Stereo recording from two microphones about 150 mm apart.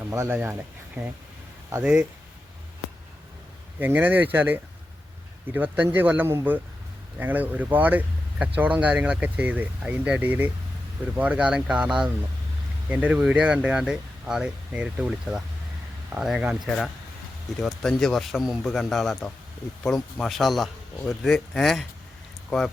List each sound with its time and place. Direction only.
0.0 s speech: 15° right (ahead or behind)
1.7 s speech: 5° right (ahead or behind)
3.8 s speech: 15° right (ahead or behind); by 22.7 s 5° left (ahead or behind)